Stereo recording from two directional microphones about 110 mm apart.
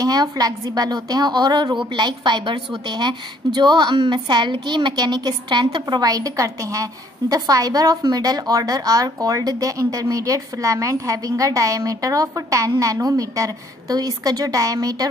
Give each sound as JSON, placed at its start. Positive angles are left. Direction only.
{"t": 0.0, "sound": "a woman's voice", "side_deg": -35}